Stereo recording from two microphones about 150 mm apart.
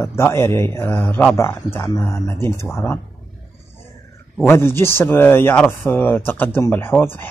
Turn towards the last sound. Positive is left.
turn(degrees=15)  # may be behind; listen again after turning